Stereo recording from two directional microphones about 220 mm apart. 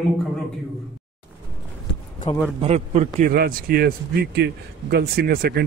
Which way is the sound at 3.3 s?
40° right (ahead or behind).